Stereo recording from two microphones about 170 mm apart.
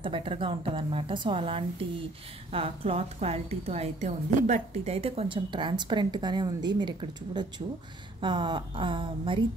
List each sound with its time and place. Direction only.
0.0 s a woman's voice: 30° right (ahead or behind)